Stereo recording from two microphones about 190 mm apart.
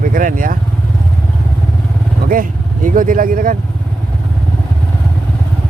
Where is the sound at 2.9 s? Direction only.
45° right (ahead or behind).